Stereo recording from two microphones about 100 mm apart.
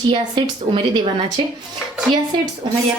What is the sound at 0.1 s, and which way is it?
A woman's voice, 55° right (ahead or behind).